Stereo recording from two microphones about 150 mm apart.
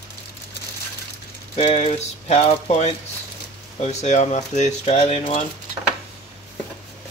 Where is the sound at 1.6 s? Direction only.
45° left (ahead or behind).